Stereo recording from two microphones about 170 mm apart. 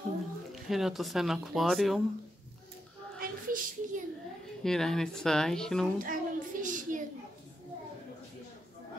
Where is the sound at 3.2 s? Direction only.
55° right (ahead or behind).